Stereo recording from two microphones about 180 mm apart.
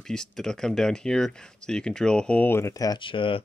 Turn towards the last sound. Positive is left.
turn(degrees=30)  # may be behind; listen again after turning